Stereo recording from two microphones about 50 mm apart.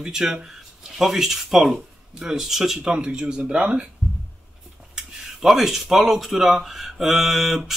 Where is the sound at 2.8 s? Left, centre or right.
Centre.